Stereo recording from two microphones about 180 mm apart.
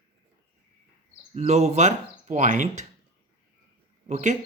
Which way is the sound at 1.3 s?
35° right (ahead or behind).